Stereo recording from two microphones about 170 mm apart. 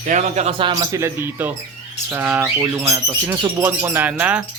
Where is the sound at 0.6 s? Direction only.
20° right (ahead or behind).